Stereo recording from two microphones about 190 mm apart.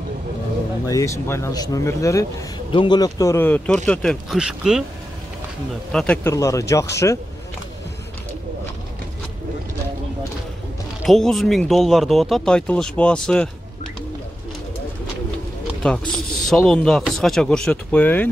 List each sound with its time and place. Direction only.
0.8 s speech: 15° left (ahead or behind); by 4.8 s 5° right (ahead or behind)
5.9 s speech: 5° left (ahead or behind)
6.3 s speech: 15° left (ahead or behind)
11.1 s speech: centre (ahead or behind)
15.8 s speech: 5° left (ahead or behind)